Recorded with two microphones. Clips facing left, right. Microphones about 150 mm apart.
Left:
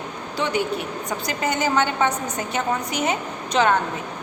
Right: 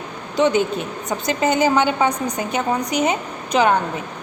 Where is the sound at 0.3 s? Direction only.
20° right (ahead or behind).